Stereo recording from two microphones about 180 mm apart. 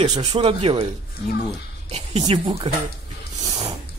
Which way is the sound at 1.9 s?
35° right (ahead or behind).